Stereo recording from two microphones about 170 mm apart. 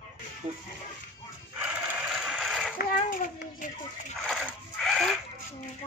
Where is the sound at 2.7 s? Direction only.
55° left (ahead or behind).